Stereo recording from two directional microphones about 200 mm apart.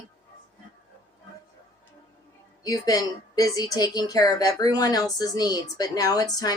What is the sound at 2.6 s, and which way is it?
A woman's voice, 20° left (ahead or behind).